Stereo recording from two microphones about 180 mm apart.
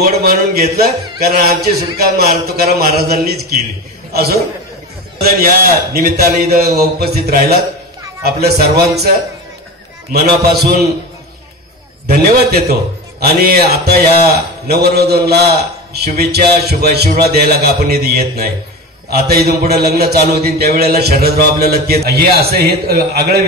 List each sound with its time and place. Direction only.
0.2 s a man's voice: 60° right (ahead or behind)
10.1 s a man's voice: 60° right (ahead or behind)
12.1 s a man's voice: 60° right (ahead or behind)